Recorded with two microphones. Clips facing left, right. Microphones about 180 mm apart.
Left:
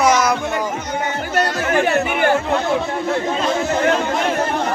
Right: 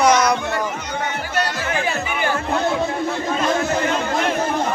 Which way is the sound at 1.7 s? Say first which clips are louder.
Left 6 dB; 60° left (ahead or behind).